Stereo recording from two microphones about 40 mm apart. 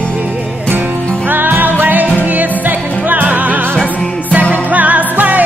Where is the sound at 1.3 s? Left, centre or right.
Right.